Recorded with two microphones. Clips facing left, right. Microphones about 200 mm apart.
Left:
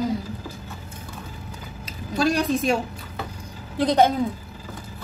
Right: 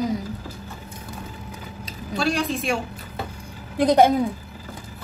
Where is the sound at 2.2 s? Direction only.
40° left (ahead or behind).